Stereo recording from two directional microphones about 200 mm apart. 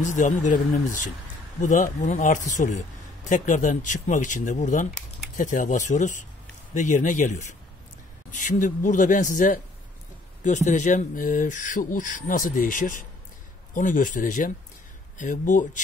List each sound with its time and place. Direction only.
0.0 s speech: 40° left (ahead or behind)